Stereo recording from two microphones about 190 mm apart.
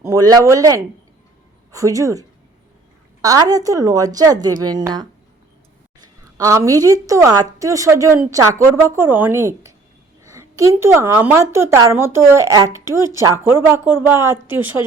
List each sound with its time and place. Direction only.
0.0 s a woman's voice: 15° right (ahead or behind)
6.3 s a woman's voice: 15° right (ahead or behind)